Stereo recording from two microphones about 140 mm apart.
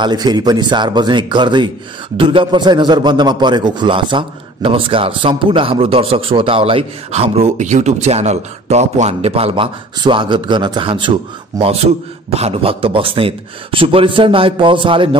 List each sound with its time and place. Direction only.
0.0 s a man's voice: 30° right (ahead or behind)